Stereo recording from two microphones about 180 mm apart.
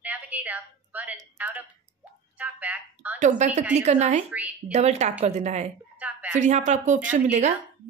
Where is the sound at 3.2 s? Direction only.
40° right (ahead or behind).